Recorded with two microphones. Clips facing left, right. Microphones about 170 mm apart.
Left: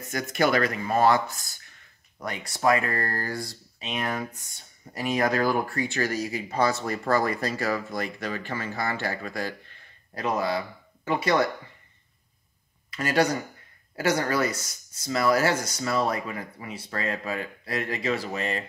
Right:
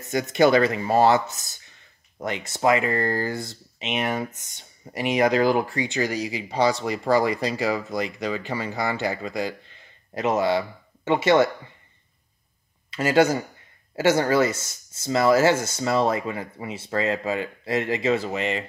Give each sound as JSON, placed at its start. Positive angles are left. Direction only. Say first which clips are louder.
{"t": 0.0, "sound": "speech", "louder": "right 6 dB", "side_deg": -20}
{"t": 12.9, "sound": "speech", "louder": "right 5 dB", "side_deg": -25}